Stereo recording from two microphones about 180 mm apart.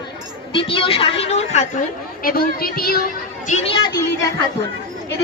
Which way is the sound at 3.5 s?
30° left (ahead or behind).